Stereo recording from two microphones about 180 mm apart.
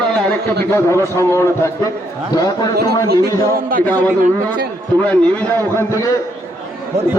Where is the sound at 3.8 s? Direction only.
10° left (ahead or behind).